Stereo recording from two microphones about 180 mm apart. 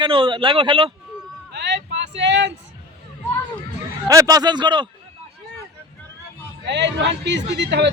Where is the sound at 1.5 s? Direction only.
75° right (ahead or behind).